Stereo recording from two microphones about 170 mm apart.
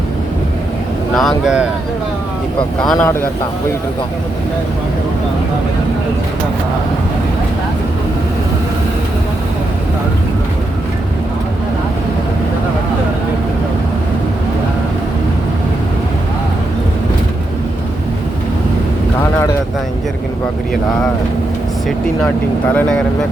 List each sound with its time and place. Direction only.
1.1 s speech: centre (ahead or behind)
3.0 s a man's voice: 15° left (ahead or behind)
22.7 s speech: 5° left (ahead or behind)